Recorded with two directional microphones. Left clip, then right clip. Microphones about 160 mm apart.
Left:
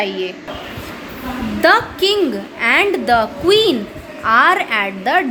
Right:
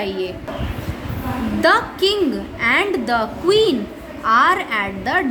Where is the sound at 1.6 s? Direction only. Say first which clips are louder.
Left 3 dB; 20° left (ahead or behind).